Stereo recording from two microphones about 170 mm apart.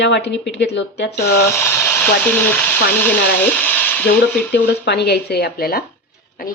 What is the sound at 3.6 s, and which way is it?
Sizzle, 10° left (ahead or behind).